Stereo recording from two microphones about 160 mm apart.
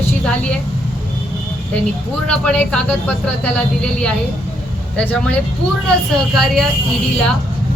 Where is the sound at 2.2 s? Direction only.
5° left (ahead or behind).